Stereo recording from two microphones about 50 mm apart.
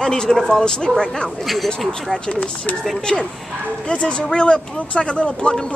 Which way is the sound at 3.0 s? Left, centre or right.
Centre.